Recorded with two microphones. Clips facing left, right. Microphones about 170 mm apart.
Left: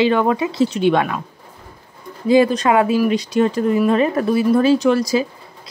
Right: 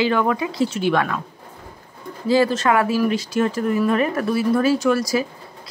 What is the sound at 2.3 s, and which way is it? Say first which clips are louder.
A woman's voice: left 3 dB; 15° left (ahead or behind).